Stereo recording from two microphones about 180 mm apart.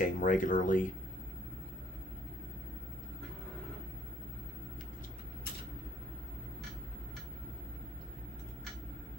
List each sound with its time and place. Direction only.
0.0 s speech: 45° left (ahead or behind)